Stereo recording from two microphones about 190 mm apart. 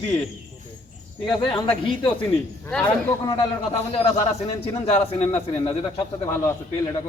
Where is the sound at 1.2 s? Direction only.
25° left (ahead or behind).